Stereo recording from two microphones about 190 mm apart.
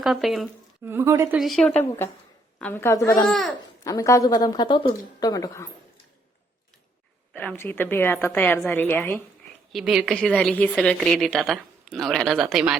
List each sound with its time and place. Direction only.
0.0 s speech: centre (ahead or behind)
0.9 s a woman's voice: 15° right (ahead or behind)
1.4 s a woman's voice: centre (ahead or behind); by 3.2 s 15° left (ahead or behind)
3.2 s speech: centre (ahead or behind)
3.8 s a woman's voice: 15° left (ahead or behind)
7.3 s a woman's voice: 10° left (ahead or behind)
9.7 s speech: 5° right (ahead or behind)